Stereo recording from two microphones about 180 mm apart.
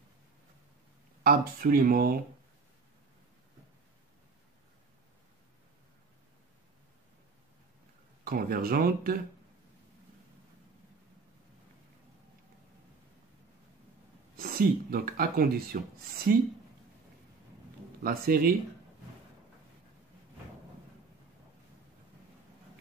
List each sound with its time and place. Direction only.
1.2 s speech: 55° right (ahead or behind)
8.2 s speech: 55° right (ahead or behind)
14.3 s speech: 55° right (ahead or behind)
18.0 s speech: 55° right (ahead or behind)